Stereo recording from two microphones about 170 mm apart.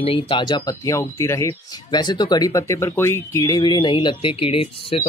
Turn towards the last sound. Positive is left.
turn(degrees=35)  # may be behind; listen again after turning